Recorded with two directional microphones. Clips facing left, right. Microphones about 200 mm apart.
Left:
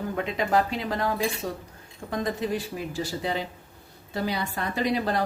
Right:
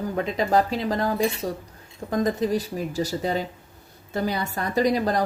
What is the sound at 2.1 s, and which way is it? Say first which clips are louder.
Speech: right 5 dB; 40° right (ahead or behind).